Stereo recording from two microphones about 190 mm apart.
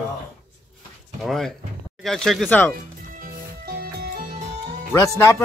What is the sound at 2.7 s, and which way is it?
Music, 50° right (ahead or behind).